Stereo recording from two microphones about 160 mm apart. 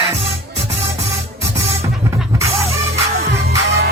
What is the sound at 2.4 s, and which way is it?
Music, 20° right (ahead or behind).